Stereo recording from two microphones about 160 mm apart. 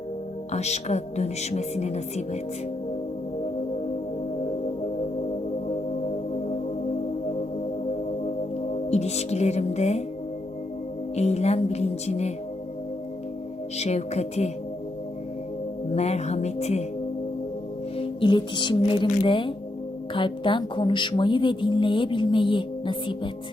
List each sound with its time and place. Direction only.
0.5 s speech: 45° left (ahead or behind)
8.9 s speech: 40° left (ahead or behind)
11.1 s speech: 40° left (ahead or behind)
13.7 s speech: 45° left (ahead or behind)
16.0 s speech: 45° left (ahead or behind)
17.9 s music: 35° left (ahead or behind)
19.2 s speech: 30° left (ahead or behind)